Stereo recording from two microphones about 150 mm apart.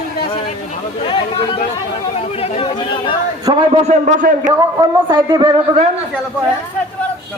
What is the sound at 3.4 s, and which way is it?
Speech, 30° right (ahead or behind).